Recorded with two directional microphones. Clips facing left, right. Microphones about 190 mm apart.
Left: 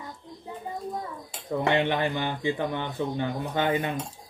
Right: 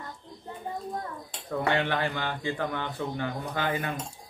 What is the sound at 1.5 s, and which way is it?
A man's voice, 20° left (ahead or behind).